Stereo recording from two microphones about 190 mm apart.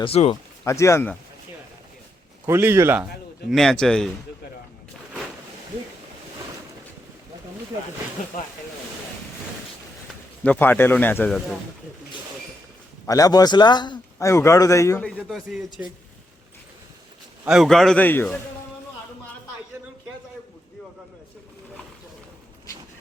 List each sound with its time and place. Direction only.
0.0 s speech: 30° left (ahead or behind)
0.6 s a man's voice: 15° left (ahead or behind)
2.5 s speech: 10° right (ahead or behind)
3.5 s a man's voice: centre (ahead or behind)
10.4 s a man's voice: 10° left (ahead or behind)
13.1 s a man's voice: 20° left (ahead or behind); by 15.6 s centre (ahead or behind)
17.4 s a man's voice: centre (ahead or behind)